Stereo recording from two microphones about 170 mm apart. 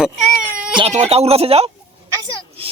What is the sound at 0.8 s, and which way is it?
Speech, 40° right (ahead or behind).